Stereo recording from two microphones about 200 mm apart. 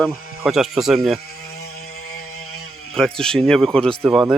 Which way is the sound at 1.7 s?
90° left.